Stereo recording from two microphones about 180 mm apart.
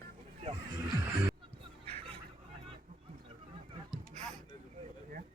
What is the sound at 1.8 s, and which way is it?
Fowl, 35° right (ahead or behind).